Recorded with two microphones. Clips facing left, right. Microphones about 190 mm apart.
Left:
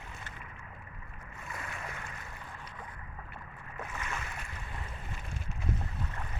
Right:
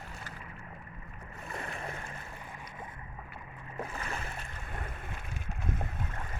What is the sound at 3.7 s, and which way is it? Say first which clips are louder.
Boat: right 2 dB; 30° right (ahead or behind).